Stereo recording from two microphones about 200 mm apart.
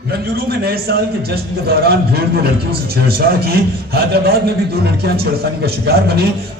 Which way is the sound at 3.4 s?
50° right (ahead or behind).